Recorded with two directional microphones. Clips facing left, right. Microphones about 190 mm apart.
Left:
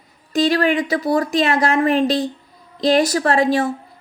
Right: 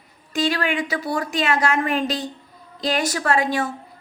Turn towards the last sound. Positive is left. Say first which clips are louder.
# left 5 dB
turn(degrees=35)  # may be behind; listen again after turning